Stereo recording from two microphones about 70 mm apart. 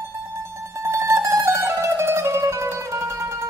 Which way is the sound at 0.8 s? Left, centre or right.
Right.